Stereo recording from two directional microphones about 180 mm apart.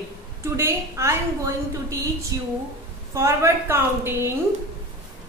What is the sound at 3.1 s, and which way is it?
A woman's voice, 15° right (ahead or behind).